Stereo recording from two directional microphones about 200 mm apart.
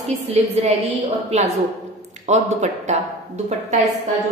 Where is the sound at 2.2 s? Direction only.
35° right (ahead or behind).